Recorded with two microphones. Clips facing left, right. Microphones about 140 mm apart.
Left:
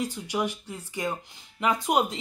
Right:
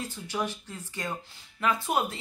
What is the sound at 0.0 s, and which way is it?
Speech, 15° left (ahead or behind).